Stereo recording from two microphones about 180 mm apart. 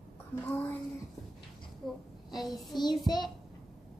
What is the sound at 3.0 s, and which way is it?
Speech, 25° left (ahead or behind).